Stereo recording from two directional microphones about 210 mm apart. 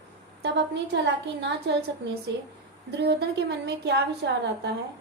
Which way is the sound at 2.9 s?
50° right (ahead or behind).